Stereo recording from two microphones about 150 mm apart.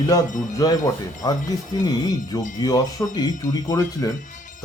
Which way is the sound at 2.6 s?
25° left (ahead or behind).